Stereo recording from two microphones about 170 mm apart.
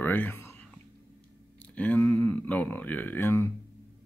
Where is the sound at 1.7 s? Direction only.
10° left (ahead or behind).